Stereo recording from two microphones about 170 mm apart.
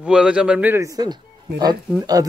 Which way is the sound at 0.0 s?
5° right (ahead or behind).